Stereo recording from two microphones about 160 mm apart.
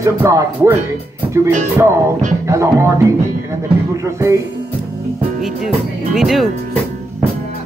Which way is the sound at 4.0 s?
20° right (ahead or behind).